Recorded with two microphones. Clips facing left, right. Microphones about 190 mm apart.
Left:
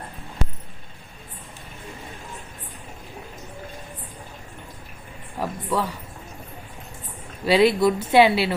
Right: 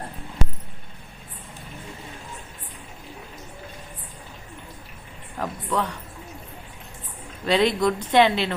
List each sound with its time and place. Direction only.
5.4 s speech: 5° left (ahead or behind)
7.4 s speech: 5° left (ahead or behind)